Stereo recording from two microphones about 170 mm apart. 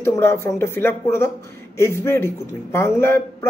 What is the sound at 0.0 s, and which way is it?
Speech, 15° left (ahead or behind).